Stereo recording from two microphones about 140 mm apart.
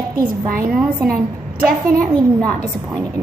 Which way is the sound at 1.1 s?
90° right.